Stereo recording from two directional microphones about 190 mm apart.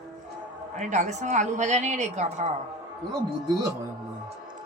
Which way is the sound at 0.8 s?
40° right (ahead or behind).